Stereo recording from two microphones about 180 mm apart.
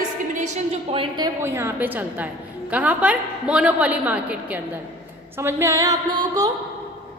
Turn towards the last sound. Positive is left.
turn(degrees=-20)  # may be behind; listen again after turning